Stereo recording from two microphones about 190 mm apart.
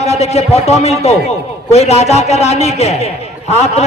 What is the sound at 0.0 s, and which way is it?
Speech, 35° left (ahead or behind).